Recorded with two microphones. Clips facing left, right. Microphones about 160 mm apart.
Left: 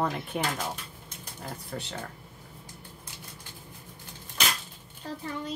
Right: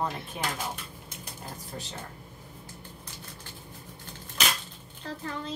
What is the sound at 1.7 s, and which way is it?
Speech, 90° left.